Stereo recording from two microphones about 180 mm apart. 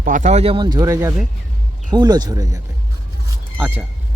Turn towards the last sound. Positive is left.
turn(degrees=-10)  # may be behind; listen again after turning